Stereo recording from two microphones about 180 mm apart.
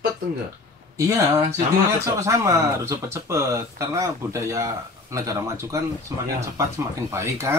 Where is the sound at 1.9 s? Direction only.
15° right (ahead or behind).